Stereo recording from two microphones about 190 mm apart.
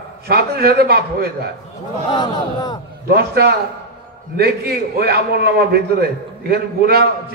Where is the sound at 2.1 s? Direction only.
20° left (ahead or behind).